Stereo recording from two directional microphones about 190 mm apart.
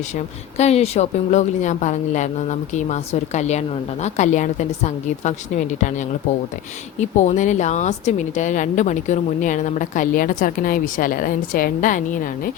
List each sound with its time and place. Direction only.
0.5 s a woman's voice: 35° left (ahead or behind)
7.0 s a woman's voice: 40° left (ahead or behind)